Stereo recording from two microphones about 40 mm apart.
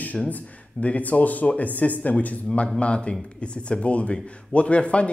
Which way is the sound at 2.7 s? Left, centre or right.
Left.